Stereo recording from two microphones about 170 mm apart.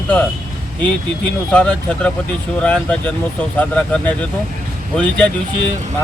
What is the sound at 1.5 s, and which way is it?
Speech, 5° left (ahead or behind).